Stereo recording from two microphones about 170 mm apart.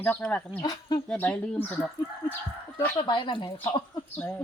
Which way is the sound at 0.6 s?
25° left (ahead or behind).